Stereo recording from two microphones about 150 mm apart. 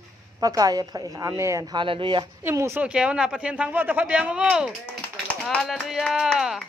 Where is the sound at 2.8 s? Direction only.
5° right (ahead or behind).